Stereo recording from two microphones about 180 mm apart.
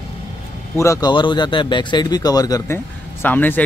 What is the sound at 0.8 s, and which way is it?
Speech, 20° left (ahead or behind).